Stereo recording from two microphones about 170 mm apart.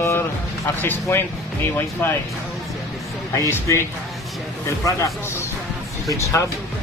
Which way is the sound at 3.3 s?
15° left (ahead or behind).